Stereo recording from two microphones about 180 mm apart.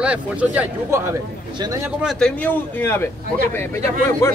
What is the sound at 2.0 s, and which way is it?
A man's voice, 5° left (ahead or behind).